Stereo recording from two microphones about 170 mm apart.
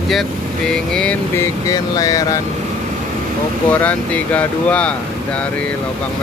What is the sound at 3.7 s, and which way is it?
Speech, 10° left (ahead or behind).